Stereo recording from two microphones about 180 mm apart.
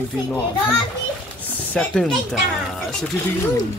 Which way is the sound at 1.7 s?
5° left (ahead or behind).